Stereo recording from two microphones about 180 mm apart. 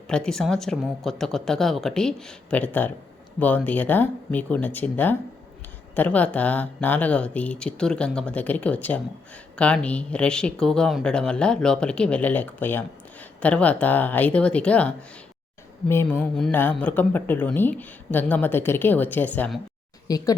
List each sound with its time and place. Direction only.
0.1 s speech: 5° left (ahead or behind)
20.1 s speech: 20° left (ahead or behind)